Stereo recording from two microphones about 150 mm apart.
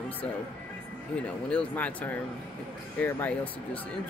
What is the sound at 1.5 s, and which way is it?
Speech, 10° left (ahead or behind).